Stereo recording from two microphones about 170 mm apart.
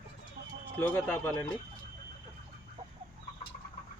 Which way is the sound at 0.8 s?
10° left (ahead or behind).